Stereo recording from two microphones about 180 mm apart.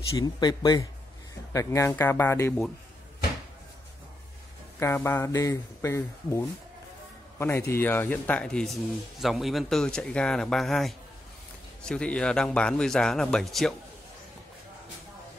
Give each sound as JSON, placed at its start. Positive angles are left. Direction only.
{"t": 0.2, "sound": "speech", "side_deg": 25}
{"t": 4.7, "sound": "a man's voice", "side_deg": 15}